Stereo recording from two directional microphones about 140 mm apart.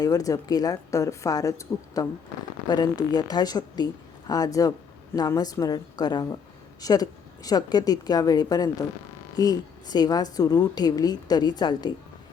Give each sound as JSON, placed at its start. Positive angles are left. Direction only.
{"t": 0.0, "sound": "a woman's voice", "side_deg": 25}